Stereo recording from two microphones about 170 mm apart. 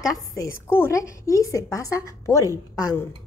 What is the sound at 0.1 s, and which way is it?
A woman's voice, 20° left (ahead or behind).